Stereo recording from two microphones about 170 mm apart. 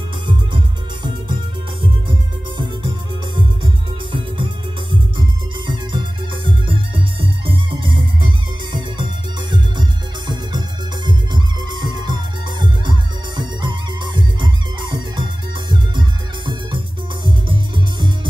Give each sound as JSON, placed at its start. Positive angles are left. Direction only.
{"t": 1.0, "sound": "music", "side_deg": -25}
{"t": 5.7, "sound": "music", "side_deg": -30}